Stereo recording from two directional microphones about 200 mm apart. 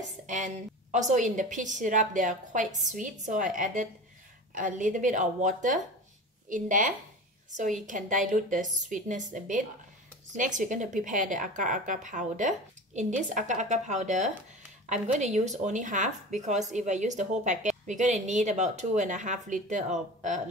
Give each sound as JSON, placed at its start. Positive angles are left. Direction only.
{"t": 0.9, "sound": "speech", "side_deg": -35}